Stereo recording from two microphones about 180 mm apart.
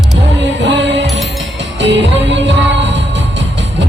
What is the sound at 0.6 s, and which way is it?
Music, 75° right (ahead or behind).